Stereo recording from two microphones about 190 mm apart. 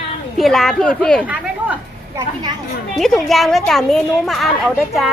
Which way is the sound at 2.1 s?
20° right (ahead or behind).